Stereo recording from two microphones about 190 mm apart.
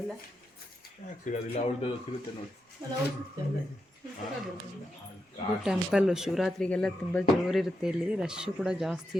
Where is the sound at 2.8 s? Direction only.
25° right (ahead or behind).